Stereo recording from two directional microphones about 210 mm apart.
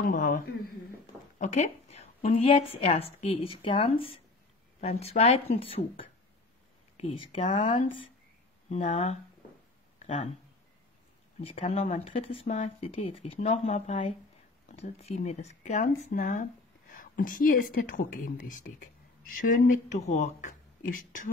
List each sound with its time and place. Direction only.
0.0 s speech: 40° left (ahead or behind)
1.4 s a sound: 35° left (ahead or behind)
2.4 s speech: 25° left (ahead or behind)
8.6 s speech: 35° left (ahead or behind)
11.4 s a woman's voice: 30° left (ahead or behind)